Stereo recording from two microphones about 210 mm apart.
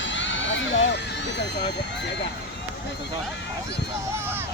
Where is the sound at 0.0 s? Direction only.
60° left (ahead or behind).